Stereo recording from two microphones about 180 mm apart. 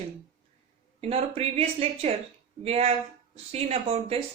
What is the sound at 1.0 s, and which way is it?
Speech, 35° right (ahead or behind).